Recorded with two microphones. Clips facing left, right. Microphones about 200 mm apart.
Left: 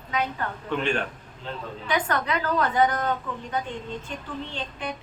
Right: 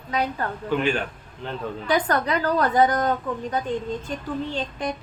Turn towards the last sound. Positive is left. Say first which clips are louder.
# right 5 dB
turn(degrees=-40)  # may be behind; listen again after turning